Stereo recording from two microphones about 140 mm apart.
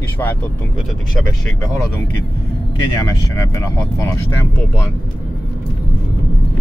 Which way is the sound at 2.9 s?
25° left (ahead or behind).